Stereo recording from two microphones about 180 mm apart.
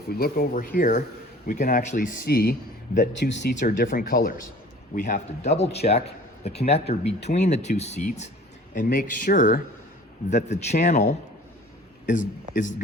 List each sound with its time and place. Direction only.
0.1 s speech: 55° left (ahead or behind); by 3.5 s 80° left
3.5 s speech: 45° left (ahead or behind)
8.7 s speech: 50° left (ahead or behind)